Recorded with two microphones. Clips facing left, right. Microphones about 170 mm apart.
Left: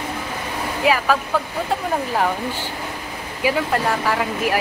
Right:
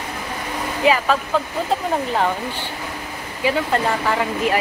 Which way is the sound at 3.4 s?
10° left (ahead or behind).